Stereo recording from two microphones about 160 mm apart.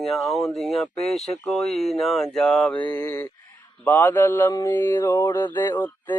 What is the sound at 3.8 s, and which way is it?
Mantra, 10° left (ahead or behind).